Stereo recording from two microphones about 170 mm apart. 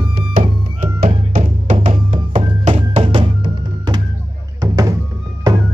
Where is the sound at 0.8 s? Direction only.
45° right (ahead or behind); by 4.0 s 25° right (ahead or behind).